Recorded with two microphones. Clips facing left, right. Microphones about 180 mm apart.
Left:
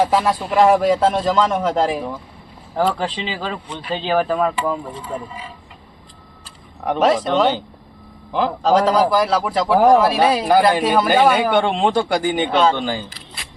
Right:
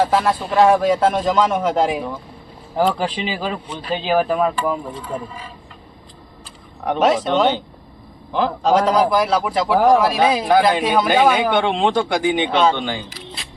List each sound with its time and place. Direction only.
0.0 s a man's voice: 5° left (ahead or behind)
3.2 s speech: 10° right (ahead or behind)
6.8 s a man's voice: centre (ahead or behind)